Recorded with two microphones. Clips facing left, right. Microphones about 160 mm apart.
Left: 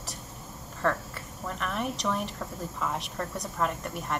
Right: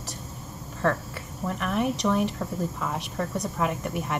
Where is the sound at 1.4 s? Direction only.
5° right (ahead or behind).